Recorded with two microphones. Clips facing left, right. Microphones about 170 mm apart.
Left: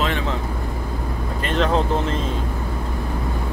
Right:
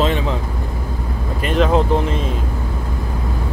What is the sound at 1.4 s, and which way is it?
Speech, 10° right (ahead or behind).